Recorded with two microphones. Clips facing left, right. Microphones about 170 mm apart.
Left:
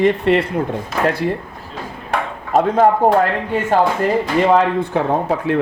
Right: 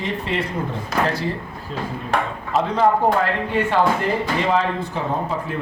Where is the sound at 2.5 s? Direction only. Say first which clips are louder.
Left 5 dB; 50° left (ahead or behind).